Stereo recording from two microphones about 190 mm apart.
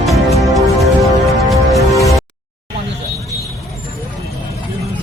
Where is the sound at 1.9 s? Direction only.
15° left (ahead or behind).